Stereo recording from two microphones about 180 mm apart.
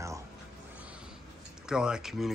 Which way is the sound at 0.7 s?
5° right (ahead or behind).